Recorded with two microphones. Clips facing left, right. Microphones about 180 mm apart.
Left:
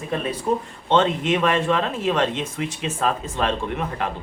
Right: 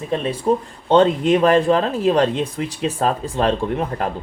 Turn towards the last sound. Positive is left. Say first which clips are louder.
# right 4 dB
turn(degrees=-35)  # may be behind; listen again after turning